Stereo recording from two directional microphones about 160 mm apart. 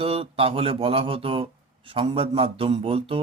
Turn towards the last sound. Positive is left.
turn(degrees=-35)  # may be behind; listen again after turning